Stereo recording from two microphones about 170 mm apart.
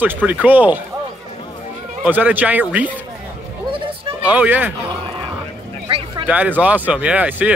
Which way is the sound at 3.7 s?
30° right (ahead or behind).